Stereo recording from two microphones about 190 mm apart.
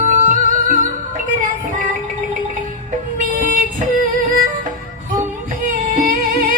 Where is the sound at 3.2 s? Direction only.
45° right (ahead or behind).